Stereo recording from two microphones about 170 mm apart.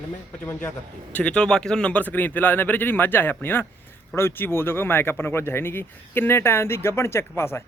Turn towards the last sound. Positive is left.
turn(degrees=15)  # may be behind; listen again after turning